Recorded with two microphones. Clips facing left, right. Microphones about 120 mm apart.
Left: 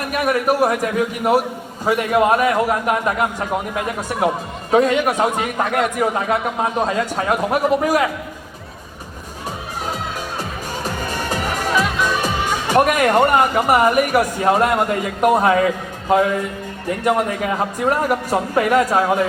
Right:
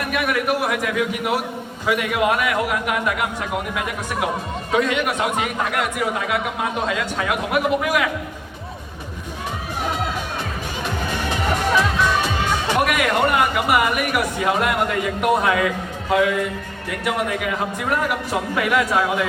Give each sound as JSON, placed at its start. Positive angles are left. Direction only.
{"t": 0.0, "sound": "a man's voice", "side_deg": 40}
{"t": 10.8, "sound": "music", "side_deg": 40}
{"t": 11.7, "sound": "music", "side_deg": 10}
{"t": 12.7, "sound": "a man's voice", "side_deg": 45}